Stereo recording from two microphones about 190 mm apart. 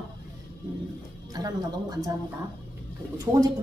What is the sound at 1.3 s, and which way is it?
Speech, 20° right (ahead or behind).